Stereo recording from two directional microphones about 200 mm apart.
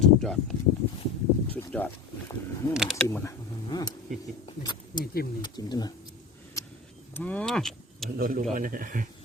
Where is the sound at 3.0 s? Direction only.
15° left (ahead or behind).